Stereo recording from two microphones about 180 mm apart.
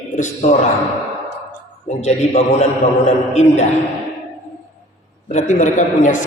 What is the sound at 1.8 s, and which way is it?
A man's voice, 40° left (ahead or behind).